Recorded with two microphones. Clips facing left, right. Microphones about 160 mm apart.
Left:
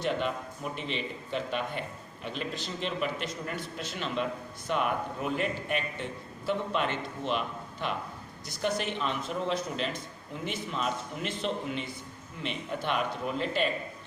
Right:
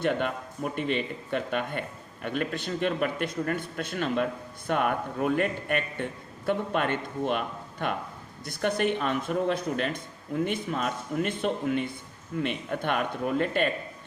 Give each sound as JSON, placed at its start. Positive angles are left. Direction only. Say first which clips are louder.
{"t": 0.0, "sound": "a man's voice", "louder": "right 3 dB", "side_deg": -55}